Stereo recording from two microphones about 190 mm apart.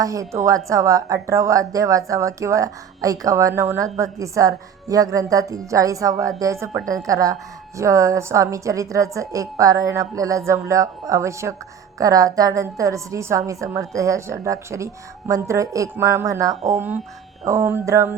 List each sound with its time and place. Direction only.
0.0 s a woman's voice: 15° right (ahead or behind)